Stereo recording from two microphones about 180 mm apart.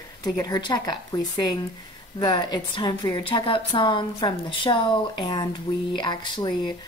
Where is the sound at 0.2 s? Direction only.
20° left (ahead or behind).